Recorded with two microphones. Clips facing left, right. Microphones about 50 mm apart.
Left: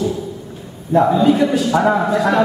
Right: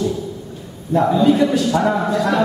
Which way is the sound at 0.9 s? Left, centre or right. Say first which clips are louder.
Left 1 dB; centre.